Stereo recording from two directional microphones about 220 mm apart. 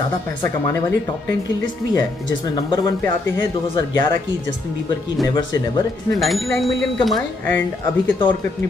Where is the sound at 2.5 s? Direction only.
15° left (ahead or behind).